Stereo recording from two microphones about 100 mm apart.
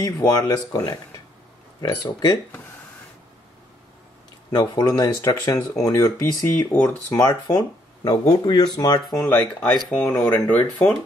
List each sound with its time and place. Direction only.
0.0 s speech: 40° left (ahead or behind)
4.5 s speech: 40° left (ahead or behind)
6.4 s speech: 20° left (ahead or behind)
7.2 s speech: 40° left (ahead or behind)
9.1 s speech: 25° left (ahead or behind)
9.5 s speech: 5° left (ahead or behind)